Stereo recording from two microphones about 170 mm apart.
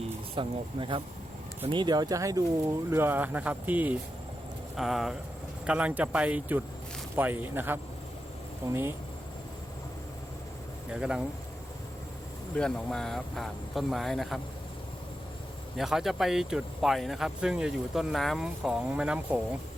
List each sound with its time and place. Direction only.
0.3 s speech: 30° right (ahead or behind); by 9.0 s 15° right (ahead or behind)
10.9 s speech: 5° right (ahead or behind)
12.5 s speech: 5° left (ahead or behind)
15.8 s speech: centre (ahead or behind)